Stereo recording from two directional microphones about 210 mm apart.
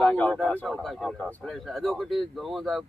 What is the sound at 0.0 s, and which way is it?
A man's voice, 5° left (ahead or behind).